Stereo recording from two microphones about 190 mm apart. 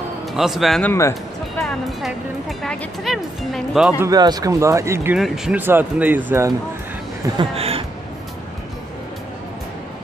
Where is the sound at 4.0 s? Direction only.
20° right (ahead or behind).